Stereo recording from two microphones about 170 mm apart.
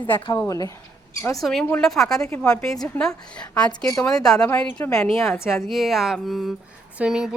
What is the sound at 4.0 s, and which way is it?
A woman's voice, 5° left (ahead or behind).